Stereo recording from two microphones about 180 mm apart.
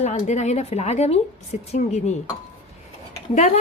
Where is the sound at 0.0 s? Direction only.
40° left (ahead or behind).